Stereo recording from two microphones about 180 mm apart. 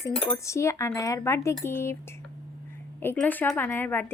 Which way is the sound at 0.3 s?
15° left (ahead or behind).